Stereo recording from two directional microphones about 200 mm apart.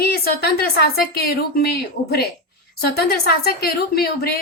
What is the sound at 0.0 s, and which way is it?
Speech, 50° left (ahead or behind).